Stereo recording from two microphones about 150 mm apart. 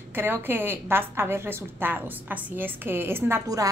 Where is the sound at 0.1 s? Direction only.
15° right (ahead or behind).